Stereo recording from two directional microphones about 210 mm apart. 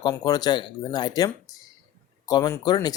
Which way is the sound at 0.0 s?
20° left (ahead or behind).